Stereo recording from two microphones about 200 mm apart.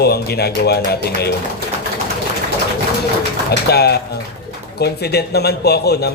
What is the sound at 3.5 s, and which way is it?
A man's voice, 55° left (ahead or behind).